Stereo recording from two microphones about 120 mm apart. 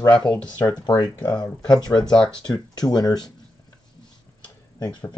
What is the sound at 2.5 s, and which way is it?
Speech, 35° left (ahead or behind).